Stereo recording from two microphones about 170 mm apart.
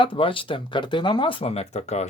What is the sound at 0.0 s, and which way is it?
Speech, 30° left (ahead or behind).